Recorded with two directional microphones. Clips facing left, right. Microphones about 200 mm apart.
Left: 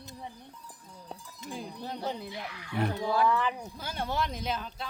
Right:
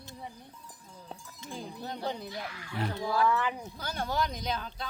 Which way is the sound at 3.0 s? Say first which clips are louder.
Even; 20° left (ahead or behind).